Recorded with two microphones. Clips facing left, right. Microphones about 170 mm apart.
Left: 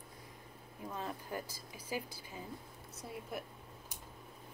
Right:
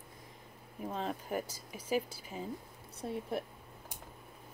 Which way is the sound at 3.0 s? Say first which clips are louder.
Right 8 dB; 70° right (ahead or behind).